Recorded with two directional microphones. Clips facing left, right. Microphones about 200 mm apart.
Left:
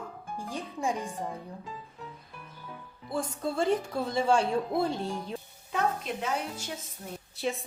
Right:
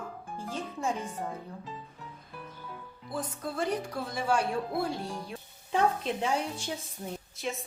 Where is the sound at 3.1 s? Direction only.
25° left (ahead or behind).